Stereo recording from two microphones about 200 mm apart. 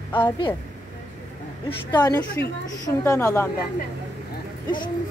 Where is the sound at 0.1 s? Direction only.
25° left (ahead or behind).